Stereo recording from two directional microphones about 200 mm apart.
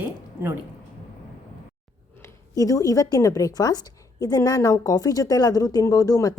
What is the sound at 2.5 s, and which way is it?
A woman's voice, 15° left (ahead or behind).